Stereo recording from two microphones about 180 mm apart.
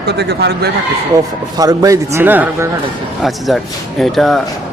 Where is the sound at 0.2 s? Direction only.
65° right (ahead or behind).